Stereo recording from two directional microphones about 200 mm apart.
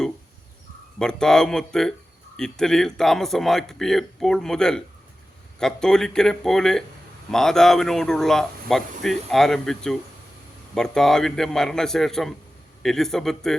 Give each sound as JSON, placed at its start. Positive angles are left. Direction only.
{"t": 0.9, "sound": "speech", "side_deg": 5}